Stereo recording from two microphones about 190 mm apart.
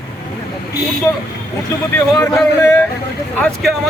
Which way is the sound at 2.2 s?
15° left (ahead or behind).